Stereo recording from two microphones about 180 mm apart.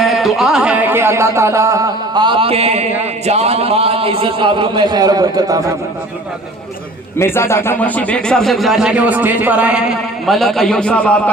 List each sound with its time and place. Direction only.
0.0 s music: centre (ahead or behind); by 2.8 s 35° right (ahead or behind)
3.2 s a man's voice: 35° right (ahead or behind); by 5.6 s 20° right (ahead or behind)
7.2 s a man's voice: 15° left (ahead or behind)